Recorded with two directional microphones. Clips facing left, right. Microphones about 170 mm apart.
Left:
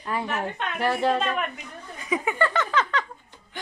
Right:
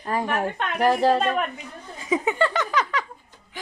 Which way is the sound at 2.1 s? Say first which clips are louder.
Right 3 dB; 20° right (ahead or behind).